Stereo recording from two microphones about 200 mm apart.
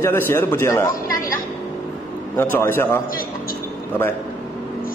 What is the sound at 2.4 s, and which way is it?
Speech, 10° left (ahead or behind).